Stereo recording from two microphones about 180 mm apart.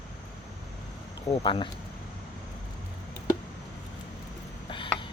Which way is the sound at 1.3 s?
30° left (ahead or behind).